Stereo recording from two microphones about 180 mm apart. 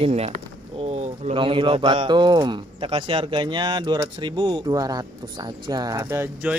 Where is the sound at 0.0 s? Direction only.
35° right (ahead or behind); by 6.6 s 10° right (ahead or behind).